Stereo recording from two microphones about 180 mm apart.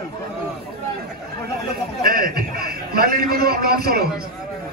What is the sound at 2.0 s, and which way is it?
A man's voice, 55° right (ahead or behind).